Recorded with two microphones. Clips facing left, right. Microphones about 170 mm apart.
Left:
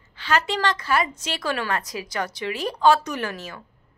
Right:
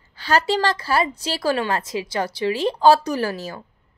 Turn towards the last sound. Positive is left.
turn(degrees=-35)  # may be behind; listen again after turning